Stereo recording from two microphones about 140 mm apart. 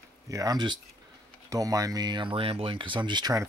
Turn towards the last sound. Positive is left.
turn(degrees=-30)  # may be behind; listen again after turning